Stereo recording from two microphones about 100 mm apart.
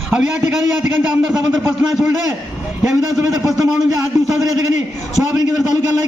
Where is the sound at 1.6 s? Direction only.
30° right (ahead or behind).